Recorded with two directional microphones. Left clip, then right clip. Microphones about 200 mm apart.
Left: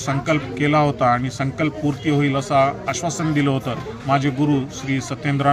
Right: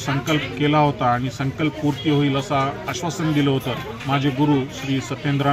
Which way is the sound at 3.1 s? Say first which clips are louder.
Right 3 dB; 20° left (ahead or behind).